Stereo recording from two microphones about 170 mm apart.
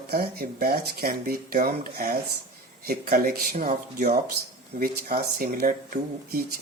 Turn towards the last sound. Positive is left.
turn(degrees=-60)  # may be behind; listen again after turning